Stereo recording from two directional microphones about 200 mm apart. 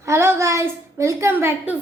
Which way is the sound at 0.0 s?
15° right (ahead or behind).